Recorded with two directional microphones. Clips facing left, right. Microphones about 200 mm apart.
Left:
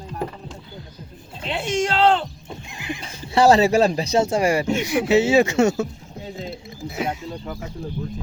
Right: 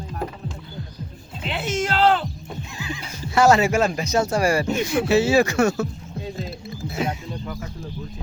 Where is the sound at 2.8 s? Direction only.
15° left (ahead or behind).